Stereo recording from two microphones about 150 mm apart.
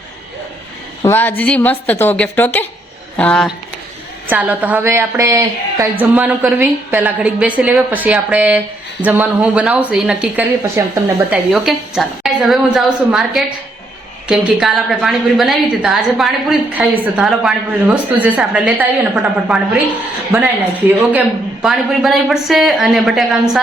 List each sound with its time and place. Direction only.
1.0 s a man's voice: 15° left (ahead or behind)
4.3 s a woman's voice: 10° right (ahead or behind)
11.3 s a man's voice: centre (ahead or behind)